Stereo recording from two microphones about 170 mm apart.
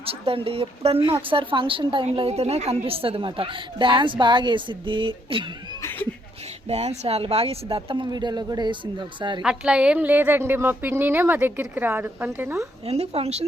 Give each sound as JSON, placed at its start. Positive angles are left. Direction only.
{"t": 0.0, "sound": "speech", "side_deg": -35}
{"t": 6.7, "sound": "speech", "side_deg": -40}
{"t": 9.4, "sound": "a woman's voice", "side_deg": -5}
{"t": 12.8, "sound": "speech", "side_deg": -35}